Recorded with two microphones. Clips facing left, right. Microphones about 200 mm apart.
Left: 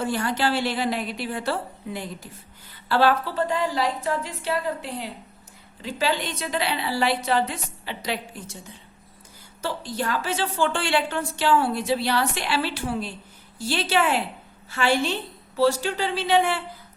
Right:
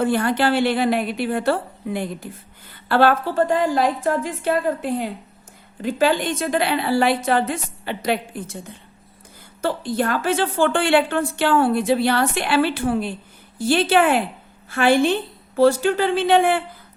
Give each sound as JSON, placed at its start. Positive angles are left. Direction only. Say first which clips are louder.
{"t": 0.0, "sound": "a woman's voice", "louder": "right 6 dB", "side_deg": -55}